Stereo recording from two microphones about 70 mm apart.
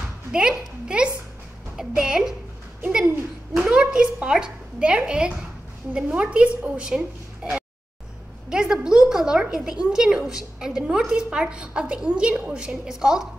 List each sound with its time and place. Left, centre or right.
0.3 s a woman's voice: centre
3.5 s a woman's voice: centre
8.5 s a woman's voice: centre